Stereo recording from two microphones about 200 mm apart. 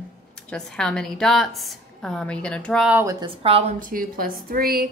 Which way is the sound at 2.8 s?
15° right (ahead or behind).